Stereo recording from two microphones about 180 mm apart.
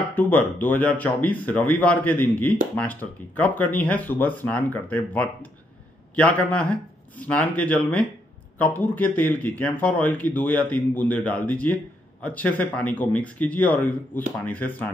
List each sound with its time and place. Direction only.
0.1 s speech: 10° left (ahead or behind)